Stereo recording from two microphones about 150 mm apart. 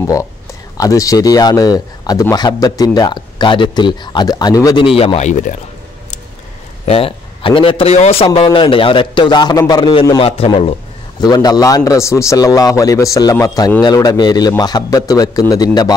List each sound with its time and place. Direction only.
0.0 s a man's voice: 20° left (ahead or behind)
4.9 s speech: 45° left (ahead or behind)
6.9 s a man's voice: 40° left (ahead or behind)
8.3 s a man's voice: 30° left (ahead or behind)
11.1 s a man's voice: 25° left (ahead or behind)